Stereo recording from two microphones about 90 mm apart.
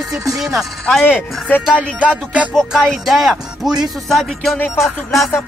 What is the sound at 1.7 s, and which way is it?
Music, 15° right (ahead or behind).